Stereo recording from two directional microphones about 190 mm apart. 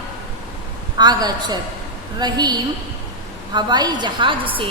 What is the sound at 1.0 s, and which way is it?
A woman's voice, 20° right (ahead or behind).